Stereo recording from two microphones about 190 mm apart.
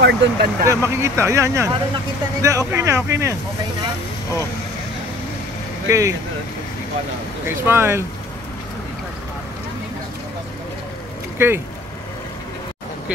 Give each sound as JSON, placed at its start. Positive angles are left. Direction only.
{"t": 0.0, "sound": "speech", "side_deg": -55}
{"t": 0.7, "sound": "speech", "side_deg": -15}
{"t": 5.9, "sound": "speech", "side_deg": -15}
{"t": 7.4, "sound": "speech", "side_deg": -10}
{"t": 11.3, "sound": "speech", "side_deg": -10}